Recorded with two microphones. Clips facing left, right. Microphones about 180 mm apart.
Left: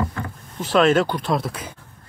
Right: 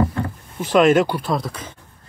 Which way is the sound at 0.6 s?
10° right (ahead or behind).